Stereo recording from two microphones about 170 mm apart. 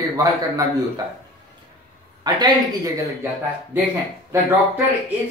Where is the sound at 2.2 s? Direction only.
25° right (ahead or behind).